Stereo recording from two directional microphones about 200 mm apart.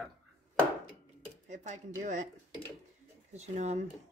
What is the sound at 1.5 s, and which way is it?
Speech, 35° right (ahead or behind).